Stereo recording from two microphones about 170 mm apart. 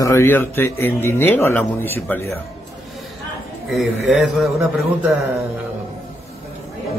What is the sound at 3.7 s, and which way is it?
Speech, 5° right (ahead or behind).